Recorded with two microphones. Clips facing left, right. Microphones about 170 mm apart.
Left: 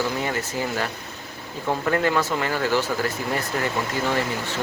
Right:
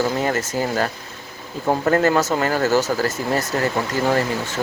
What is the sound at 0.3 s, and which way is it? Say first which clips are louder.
Speech: right 5 dB; 45° right (ahead or behind).